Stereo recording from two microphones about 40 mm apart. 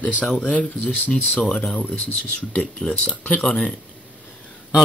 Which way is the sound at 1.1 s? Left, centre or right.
Left.